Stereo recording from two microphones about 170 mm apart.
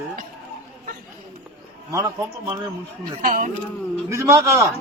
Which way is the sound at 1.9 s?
20° right (ahead or behind).